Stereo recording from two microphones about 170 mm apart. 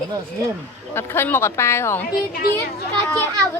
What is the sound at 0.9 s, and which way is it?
Speech, 15° left (ahead or behind).